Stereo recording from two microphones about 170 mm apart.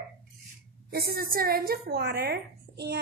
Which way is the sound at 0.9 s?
60° right (ahead or behind).